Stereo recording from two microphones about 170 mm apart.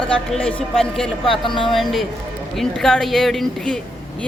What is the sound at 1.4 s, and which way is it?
Speech, 30° left (ahead or behind).